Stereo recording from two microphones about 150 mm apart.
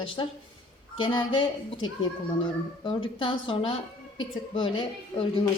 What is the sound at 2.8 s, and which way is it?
A woman's voice, 35° left (ahead or behind).